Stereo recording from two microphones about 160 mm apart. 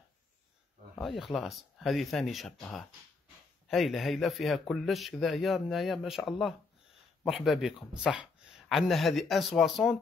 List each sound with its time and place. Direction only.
1.0 s speech: centre (ahead or behind)